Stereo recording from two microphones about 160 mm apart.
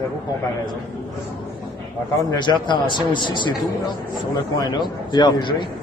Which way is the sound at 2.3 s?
30° left (ahead or behind).